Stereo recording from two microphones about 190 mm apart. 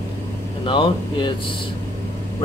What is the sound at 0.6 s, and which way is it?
Speech, 25° left (ahead or behind).